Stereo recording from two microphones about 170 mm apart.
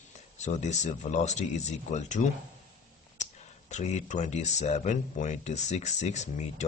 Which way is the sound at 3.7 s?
45° left (ahead or behind).